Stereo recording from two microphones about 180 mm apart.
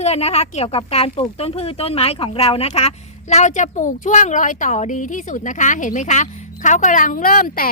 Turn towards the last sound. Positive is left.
turn(degrees=50)  # may be behind; listen again after turning